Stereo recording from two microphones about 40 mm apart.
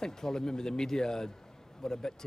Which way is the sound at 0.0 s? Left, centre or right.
Centre.